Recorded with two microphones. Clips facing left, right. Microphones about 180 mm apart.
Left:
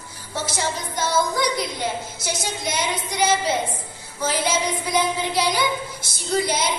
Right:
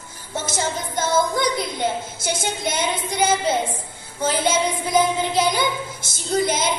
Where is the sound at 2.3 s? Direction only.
25° right (ahead or behind).